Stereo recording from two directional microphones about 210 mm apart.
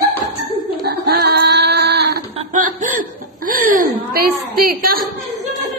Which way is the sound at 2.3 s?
35° right (ahead or behind).